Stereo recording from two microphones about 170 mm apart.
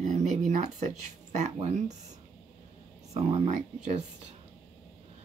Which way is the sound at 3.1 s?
35° right (ahead or behind).